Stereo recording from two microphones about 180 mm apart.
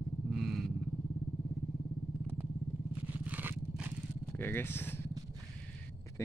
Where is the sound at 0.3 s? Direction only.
Centre (ahead or behind).